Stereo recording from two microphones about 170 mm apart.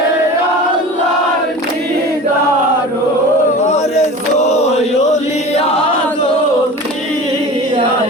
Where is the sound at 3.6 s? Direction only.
40° left (ahead or behind).